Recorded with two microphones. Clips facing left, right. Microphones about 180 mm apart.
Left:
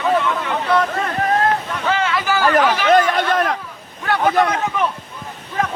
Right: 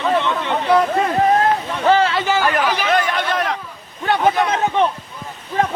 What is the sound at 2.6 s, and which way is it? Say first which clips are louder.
Chatter: left 4 dB; 45° left (ahead or behind).